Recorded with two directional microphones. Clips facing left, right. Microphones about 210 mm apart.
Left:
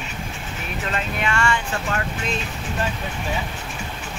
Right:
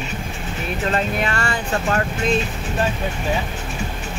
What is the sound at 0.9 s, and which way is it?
Speech, 40° right (ahead or behind).